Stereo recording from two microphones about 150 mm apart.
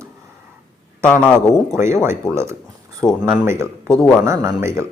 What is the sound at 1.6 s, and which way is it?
Speech, 20° right (ahead or behind).